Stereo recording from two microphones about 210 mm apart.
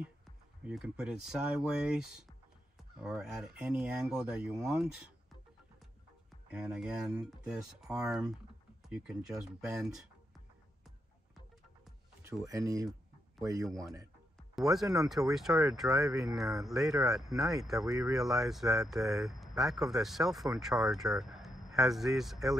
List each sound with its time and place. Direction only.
0.7 s speech: 5° right (ahead or behind)
6.5 s speech: 5° right (ahead or behind)
12.4 s speech: 15° right (ahead or behind)
14.5 s speech: centre (ahead or behind)